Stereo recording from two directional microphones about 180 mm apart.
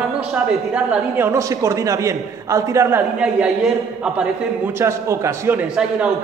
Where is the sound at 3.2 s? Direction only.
5° right (ahead or behind).